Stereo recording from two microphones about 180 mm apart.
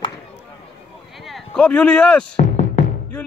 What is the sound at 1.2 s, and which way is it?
Speech, centre (ahead or behind).